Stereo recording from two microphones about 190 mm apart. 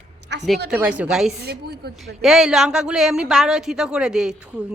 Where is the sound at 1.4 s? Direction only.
55° right (ahead or behind).